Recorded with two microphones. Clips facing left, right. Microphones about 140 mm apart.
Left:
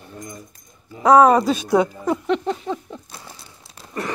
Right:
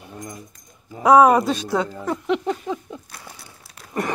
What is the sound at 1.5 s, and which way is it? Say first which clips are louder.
Speech: left 5 dB; 15° left (ahead or behind).